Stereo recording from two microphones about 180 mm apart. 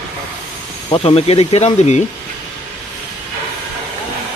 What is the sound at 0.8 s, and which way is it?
Speech, 30° left (ahead or behind).